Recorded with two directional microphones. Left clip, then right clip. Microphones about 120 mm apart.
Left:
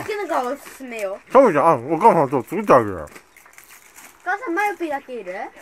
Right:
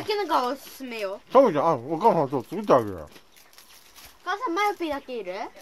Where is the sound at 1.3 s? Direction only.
Centre (ahead or behind).